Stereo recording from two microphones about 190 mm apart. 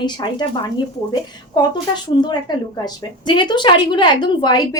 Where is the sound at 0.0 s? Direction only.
25° left (ahead or behind).